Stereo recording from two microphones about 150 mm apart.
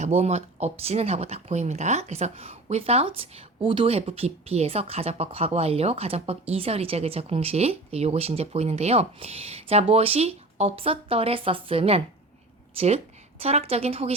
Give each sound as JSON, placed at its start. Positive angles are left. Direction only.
{"t": 0.0, "sound": "speech", "side_deg": -45}